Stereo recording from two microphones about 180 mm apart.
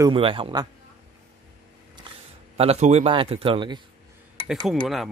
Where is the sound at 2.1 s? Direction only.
25° right (ahead or behind).